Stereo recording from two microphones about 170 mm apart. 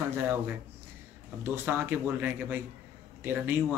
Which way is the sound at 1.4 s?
15° right (ahead or behind).